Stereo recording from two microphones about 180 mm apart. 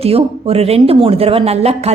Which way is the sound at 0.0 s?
35° right (ahead or behind).